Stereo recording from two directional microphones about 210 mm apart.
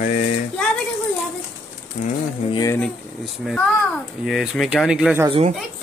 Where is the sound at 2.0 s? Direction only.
35° left (ahead or behind).